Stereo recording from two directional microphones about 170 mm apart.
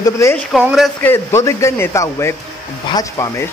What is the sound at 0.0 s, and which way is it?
Speech, 15° left (ahead or behind).